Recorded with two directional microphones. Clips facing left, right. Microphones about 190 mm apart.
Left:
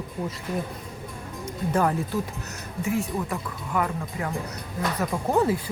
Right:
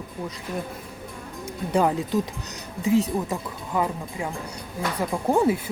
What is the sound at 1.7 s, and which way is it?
Speech, 15° right (ahead or behind).